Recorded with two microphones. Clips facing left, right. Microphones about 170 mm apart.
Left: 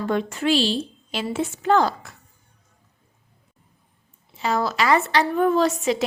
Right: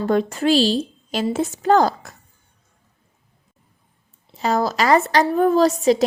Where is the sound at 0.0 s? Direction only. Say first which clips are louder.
Right 4 dB; 40° right (ahead or behind).